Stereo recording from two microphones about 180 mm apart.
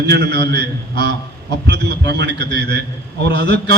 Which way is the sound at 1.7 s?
65° right (ahead or behind).